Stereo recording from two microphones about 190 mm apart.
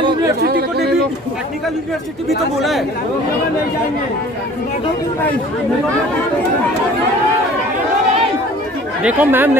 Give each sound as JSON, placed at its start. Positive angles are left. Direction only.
{"t": 0.4, "sound": "chatter", "side_deg": -55}
{"t": 2.2, "sound": "speech", "side_deg": 0}
{"t": 9.0, "sound": "speech", "side_deg": -10}